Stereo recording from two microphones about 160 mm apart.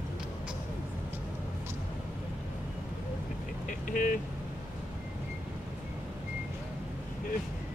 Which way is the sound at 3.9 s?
55° left (ahead or behind).